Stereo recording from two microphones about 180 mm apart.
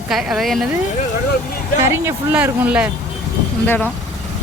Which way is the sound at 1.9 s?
10° right (ahead or behind).